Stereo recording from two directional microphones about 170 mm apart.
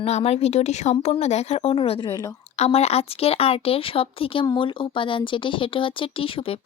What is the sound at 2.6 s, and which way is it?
Speech, 40° left (ahead or behind).